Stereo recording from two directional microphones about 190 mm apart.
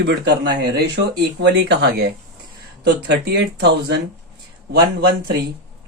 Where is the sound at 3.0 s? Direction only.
60° right (ahead or behind).